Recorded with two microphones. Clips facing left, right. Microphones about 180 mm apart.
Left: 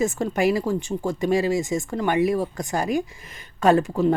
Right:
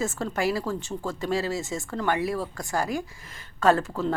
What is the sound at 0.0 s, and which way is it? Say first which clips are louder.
Speech: left 5 dB; 15° left (ahead or behind).